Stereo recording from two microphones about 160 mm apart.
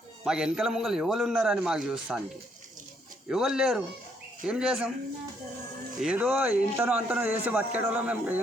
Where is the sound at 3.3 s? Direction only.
5° right (ahead or behind).